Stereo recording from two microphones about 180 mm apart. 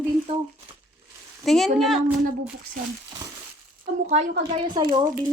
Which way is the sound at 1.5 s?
Centre (ahead or behind).